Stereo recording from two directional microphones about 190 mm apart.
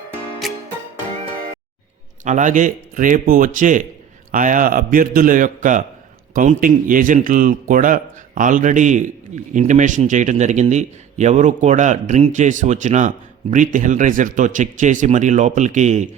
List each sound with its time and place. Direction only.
0.4 s music: centre (ahead or behind)
2.2 s a man's voice: 40° right (ahead or behind)